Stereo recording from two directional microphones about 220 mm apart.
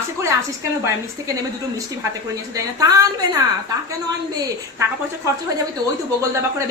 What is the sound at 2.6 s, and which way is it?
Speech, 15° right (ahead or behind).